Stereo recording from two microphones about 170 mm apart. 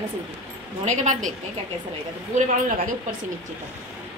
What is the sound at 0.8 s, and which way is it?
Speech, 45° right (ahead or behind).